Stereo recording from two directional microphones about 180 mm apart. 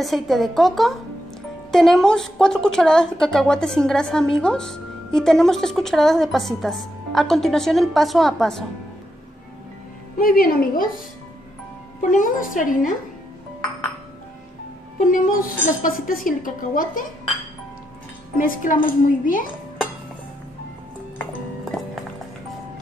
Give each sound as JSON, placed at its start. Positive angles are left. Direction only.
{"t": 0.0, "sound": "a woman's voice", "side_deg": 0}
{"t": 10.1, "sound": "a woman's voice", "side_deg": 55}
{"t": 12.0, "sound": "a woman's voice", "side_deg": 50}
{"t": 15.0, "sound": "a woman's voice", "side_deg": 50}
{"t": 18.4, "sound": "a woman's voice", "side_deg": 50}